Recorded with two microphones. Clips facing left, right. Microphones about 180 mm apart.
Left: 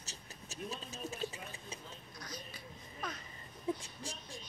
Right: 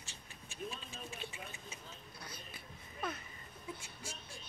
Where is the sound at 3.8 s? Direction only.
35° left (ahead or behind).